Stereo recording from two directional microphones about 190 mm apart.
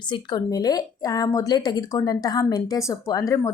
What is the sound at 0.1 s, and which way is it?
Speech, 20° left (ahead or behind).